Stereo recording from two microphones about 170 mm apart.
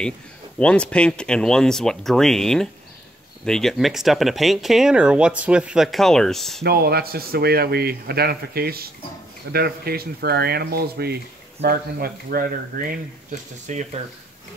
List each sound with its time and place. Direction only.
0.6 s speech: 5° left (ahead or behind)
6.6 s speech: 70° right (ahead or behind)
13.7 s speech: 45° right (ahead or behind)